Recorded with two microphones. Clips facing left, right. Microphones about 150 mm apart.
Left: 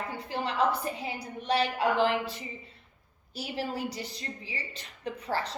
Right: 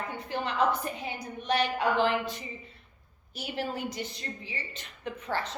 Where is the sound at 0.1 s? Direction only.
30° left (ahead or behind).